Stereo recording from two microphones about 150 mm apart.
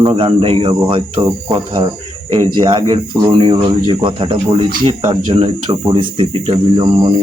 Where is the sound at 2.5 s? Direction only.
30° right (ahead or behind).